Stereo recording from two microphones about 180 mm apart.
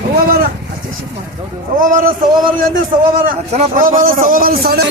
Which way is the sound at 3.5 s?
45° right (ahead or behind).